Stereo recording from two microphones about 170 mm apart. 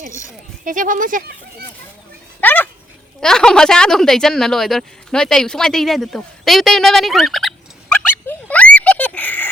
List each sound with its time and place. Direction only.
0.6 s speech: 50° right (ahead or behind)
2.4 s a sound: 10° left (ahead or behind)
3.2 s a woman's voice: 5° left (ahead or behind)